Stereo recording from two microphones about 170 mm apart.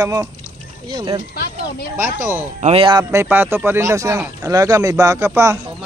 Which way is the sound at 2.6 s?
35° right (ahead or behind).